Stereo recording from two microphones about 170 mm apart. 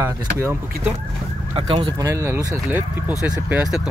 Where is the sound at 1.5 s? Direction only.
30° right (ahead or behind).